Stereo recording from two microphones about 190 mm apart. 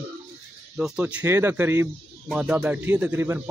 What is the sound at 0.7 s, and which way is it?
A man's voice, 5° right (ahead or behind).